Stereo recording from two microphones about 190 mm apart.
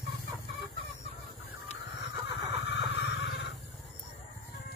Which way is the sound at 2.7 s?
70° left (ahead or behind).